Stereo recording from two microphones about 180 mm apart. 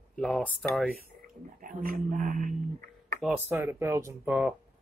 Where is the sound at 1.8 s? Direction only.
50° right (ahead or behind).